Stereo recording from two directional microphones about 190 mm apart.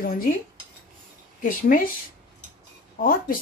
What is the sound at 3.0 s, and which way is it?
Speech, 50° left (ahead or behind).